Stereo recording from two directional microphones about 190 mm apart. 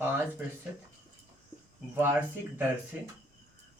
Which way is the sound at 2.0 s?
10° right (ahead or behind).